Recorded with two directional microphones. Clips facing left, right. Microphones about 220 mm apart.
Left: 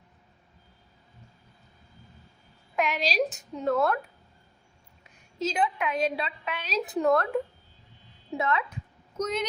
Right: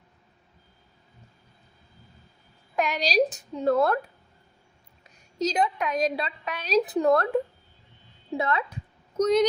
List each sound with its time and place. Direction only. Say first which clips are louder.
2.7 s a woman's voice: right 3 dB; 40° right (ahead or behind)
5.4 s a woman's voice: right 2 dB; 40° right (ahead or behind)
8.4 s speech: right 1 dB; 35° right (ahead or behind)